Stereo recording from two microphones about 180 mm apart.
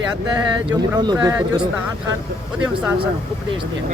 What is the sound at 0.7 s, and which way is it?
Speech, 25° right (ahead or behind).